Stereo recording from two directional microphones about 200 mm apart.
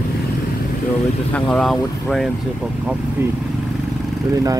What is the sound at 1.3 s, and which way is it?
Speech, centre (ahead or behind).